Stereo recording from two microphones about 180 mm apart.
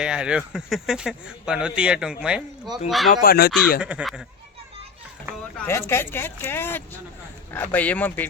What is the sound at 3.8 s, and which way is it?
Speech, 5° right (ahead or behind).